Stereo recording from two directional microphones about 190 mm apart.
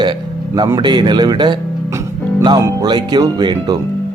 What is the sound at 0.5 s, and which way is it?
Speech, 20° right (ahead or behind).